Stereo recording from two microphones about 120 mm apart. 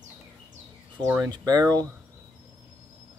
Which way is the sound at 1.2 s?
35° right (ahead or behind).